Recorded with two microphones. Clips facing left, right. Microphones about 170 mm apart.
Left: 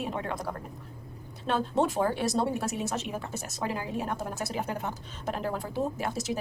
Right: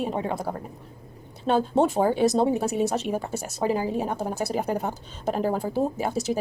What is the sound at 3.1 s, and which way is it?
Speech, 35° right (ahead or behind).